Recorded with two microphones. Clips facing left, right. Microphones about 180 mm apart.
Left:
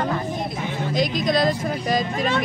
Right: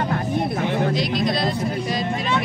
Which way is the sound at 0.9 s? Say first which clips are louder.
Left 1 dB; 45° left (ahead or behind).